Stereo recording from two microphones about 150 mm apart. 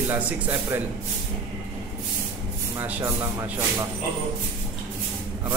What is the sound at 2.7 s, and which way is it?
Speech, 15° right (ahead or behind).